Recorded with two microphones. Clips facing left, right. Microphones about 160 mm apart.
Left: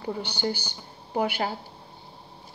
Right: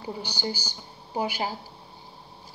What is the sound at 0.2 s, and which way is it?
A woman's voice, 60° left (ahead or behind).